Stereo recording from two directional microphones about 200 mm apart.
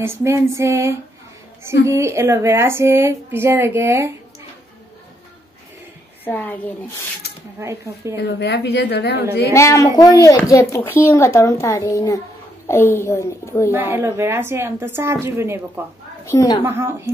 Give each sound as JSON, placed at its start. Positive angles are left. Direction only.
{"t": 0.0, "sound": "speech", "side_deg": -15}
{"t": 6.2, "sound": "speech", "side_deg": 10}
{"t": 7.5, "sound": "speech", "side_deg": -15}
{"t": 8.2, "sound": "a woman's voice", "side_deg": 55}
{"t": 9.5, "sound": "speech", "side_deg": 15}
{"t": 13.7, "sound": "speech", "side_deg": -10}
{"t": 16.3, "sound": "speech", "side_deg": 15}
{"t": 16.6, "sound": "speech", "side_deg": -10}